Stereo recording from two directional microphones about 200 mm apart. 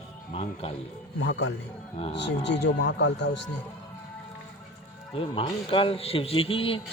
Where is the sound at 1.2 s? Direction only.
65° left (ahead or behind).